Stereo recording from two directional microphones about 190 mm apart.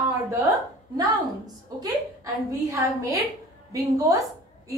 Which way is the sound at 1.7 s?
20° right (ahead or behind).